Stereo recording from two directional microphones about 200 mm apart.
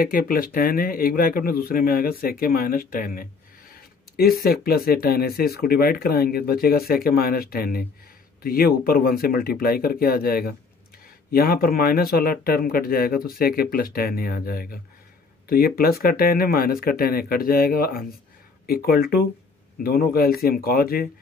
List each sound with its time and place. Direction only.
0.0 s speech: 45° left (ahead or behind)